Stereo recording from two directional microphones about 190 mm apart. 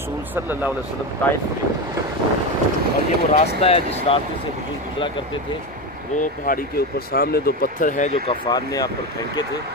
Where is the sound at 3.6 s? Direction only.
30° left (ahead or behind).